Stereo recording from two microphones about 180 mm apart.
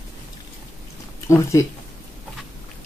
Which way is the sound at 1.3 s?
15° left (ahead or behind).